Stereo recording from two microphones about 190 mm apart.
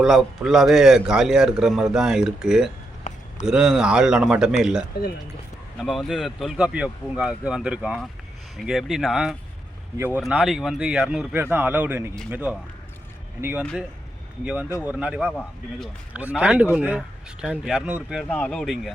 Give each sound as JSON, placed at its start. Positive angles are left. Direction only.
{"t": 0.0, "sound": "a man's voice", "side_deg": 0}
{"t": 3.1, "sound": "a sound", "side_deg": 40}
{"t": 3.4, "sound": "a man's voice", "side_deg": -5}
{"t": 13.6, "sound": "a man's voice", "side_deg": 0}